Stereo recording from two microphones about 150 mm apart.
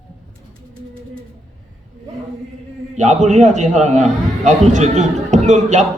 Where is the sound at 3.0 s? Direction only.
55° right (ahead or behind).